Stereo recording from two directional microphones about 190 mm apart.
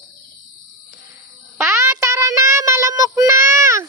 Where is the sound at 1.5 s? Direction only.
15° right (ahead or behind).